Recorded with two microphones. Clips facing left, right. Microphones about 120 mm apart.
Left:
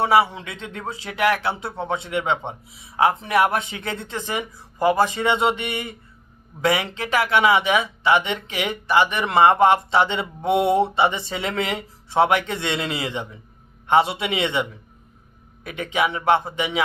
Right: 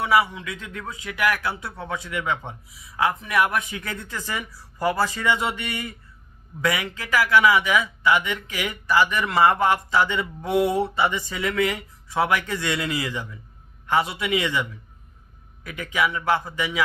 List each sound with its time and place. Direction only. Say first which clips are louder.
0.0 s a man's voice: left 3 dB; 30° left (ahead or behind)